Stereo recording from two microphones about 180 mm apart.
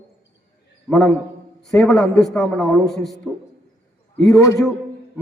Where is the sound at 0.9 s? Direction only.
Centre (ahead or behind).